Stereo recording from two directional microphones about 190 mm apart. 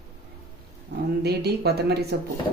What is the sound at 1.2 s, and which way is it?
Speech, 60° right (ahead or behind).